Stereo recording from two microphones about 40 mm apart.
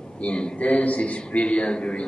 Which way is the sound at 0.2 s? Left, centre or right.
Left.